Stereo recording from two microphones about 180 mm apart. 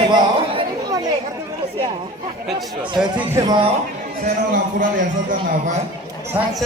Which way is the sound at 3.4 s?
20° right (ahead or behind).